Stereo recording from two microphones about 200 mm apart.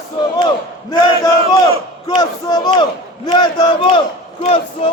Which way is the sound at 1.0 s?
20° left (ahead or behind).